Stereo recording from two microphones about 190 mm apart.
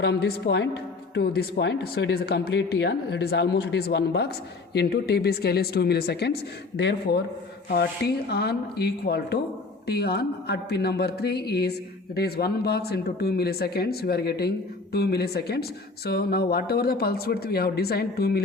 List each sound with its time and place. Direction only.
0.0 s speech: 60° left (ahead or behind)